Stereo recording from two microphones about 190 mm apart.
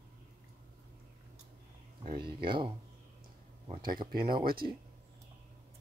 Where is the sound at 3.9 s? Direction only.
50° right (ahead or behind).